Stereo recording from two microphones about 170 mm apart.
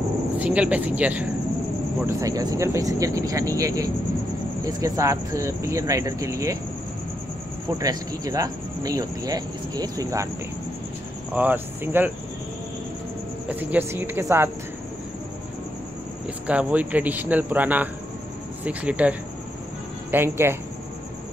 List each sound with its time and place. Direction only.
0.4 s speech: 10° right (ahead or behind)
2.0 s speech: 20° right (ahead or behind)
7.8 s speech: 20° right (ahead or behind)
11.3 s speech: 10° right (ahead or behind)
13.5 s speech: 10° right (ahead or behind)
16.4 s speech: 10° right (ahead or behind)